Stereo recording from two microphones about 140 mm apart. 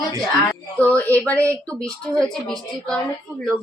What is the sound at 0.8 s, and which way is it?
A woman's voice, 10° left (ahead or behind).